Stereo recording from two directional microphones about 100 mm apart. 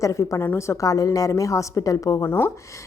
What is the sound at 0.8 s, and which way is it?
Speech, 35° left (ahead or behind).